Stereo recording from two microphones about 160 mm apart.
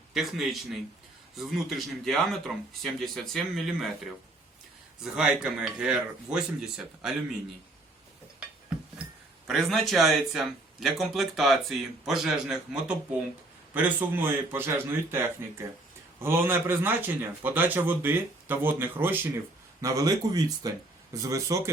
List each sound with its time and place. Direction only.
0.1 s speech: centre (ahead or behind)
5.1 s speech: 5° right (ahead or behind)
9.5 s a man's voice: centre (ahead or behind)
19.8 s speech: 25° right (ahead or behind)